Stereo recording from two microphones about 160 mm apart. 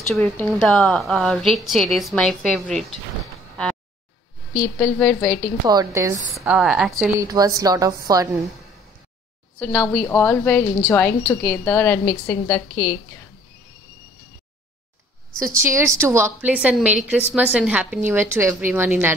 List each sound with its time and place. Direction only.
0.1 s a woman's voice: centre (ahead or behind)
4.7 s a woman's voice: 10° left (ahead or behind)
5.7 s a woman's voice: 20° right (ahead or behind)
6.5 s a woman's voice: 5° right (ahead or behind)
7.2 s a woman's voice: 25° right (ahead or behind)
9.6 s a woman's voice: 10° left (ahead or behind)
15.3 s a woman's voice: 20° right (ahead or behind)